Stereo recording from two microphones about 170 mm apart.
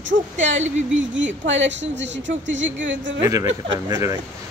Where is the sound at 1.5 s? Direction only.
90° right.